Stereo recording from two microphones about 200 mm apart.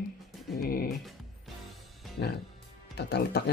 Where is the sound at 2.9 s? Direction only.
55° left (ahead or behind).